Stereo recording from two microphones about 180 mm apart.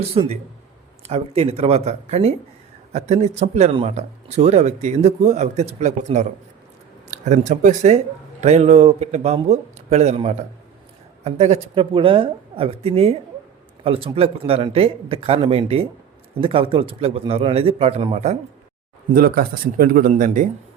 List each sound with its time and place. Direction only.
0.0 s speech: 35° right (ahead or behind)
19.1 s speech: 55° right (ahead or behind)